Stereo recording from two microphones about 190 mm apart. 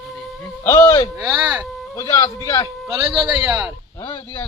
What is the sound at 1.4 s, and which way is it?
Speech, 5° right (ahead or behind).